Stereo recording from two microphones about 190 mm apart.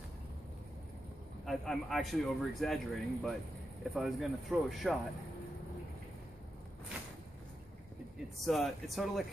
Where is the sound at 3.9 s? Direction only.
5° right (ahead or behind).